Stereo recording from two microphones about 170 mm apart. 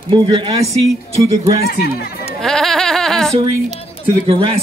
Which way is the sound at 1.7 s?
65° left (ahead or behind).